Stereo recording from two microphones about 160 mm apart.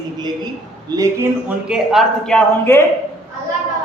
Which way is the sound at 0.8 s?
20° right (ahead or behind).